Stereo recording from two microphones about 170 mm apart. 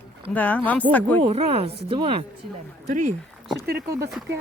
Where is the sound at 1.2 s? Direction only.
35° right (ahead or behind).